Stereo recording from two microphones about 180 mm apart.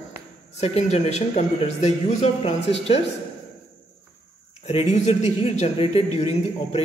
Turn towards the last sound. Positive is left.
turn(degrees=35)  # may be behind; listen again after turning